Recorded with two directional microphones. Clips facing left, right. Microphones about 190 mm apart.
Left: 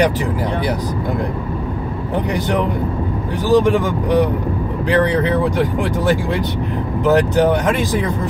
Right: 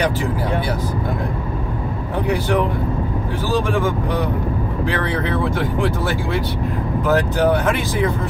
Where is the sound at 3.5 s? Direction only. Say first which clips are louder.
Left 6 dB; 15° left (ahead or behind).